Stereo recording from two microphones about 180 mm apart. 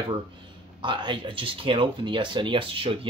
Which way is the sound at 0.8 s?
25° right (ahead or behind).